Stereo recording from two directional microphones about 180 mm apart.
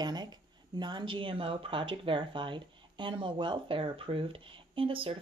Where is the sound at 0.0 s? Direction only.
25° right (ahead or behind).